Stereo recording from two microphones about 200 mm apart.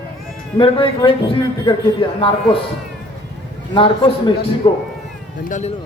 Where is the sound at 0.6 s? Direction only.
25° left (ahead or behind).